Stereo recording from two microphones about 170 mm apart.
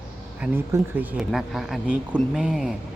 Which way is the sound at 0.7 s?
15° right (ahead or behind).